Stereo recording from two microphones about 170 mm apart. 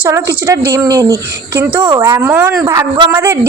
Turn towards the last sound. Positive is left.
turn(degrees=-15)  # may be behind; listen again after turning